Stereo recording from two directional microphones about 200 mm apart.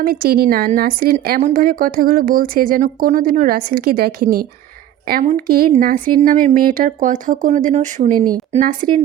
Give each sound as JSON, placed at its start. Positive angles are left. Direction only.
{"t": 0.0, "sound": "a woman's voice", "side_deg": -50}